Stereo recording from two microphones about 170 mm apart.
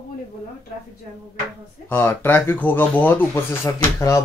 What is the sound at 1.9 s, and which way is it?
Speech, 15° left (ahead or behind).